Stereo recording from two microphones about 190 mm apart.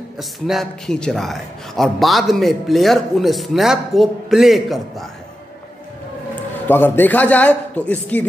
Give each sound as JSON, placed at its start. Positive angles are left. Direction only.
{"t": 0.2, "sound": "a man's voice", "side_deg": 0}
{"t": 6.7, "sound": "a man's voice", "side_deg": 10}